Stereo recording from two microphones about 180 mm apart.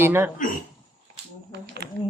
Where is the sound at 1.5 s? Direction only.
70° right (ahead or behind).